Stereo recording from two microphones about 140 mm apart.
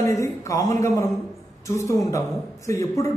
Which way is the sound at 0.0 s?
20° left (ahead or behind).